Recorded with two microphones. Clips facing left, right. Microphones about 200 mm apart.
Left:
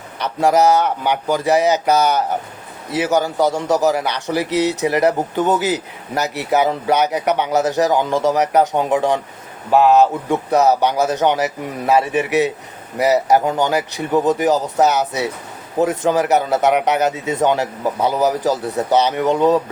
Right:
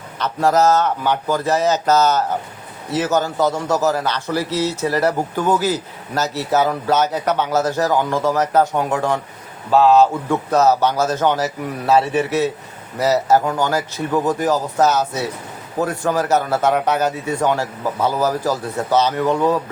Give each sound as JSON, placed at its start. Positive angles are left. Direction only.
{"t": 0.2, "sound": "a man's voice", "side_deg": 15}